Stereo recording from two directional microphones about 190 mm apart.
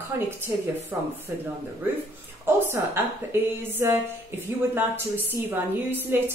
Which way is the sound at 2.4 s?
10° right (ahead or behind).